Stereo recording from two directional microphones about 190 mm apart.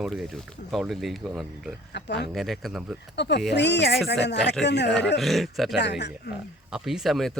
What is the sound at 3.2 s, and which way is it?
Speech, 65° left (ahead or behind).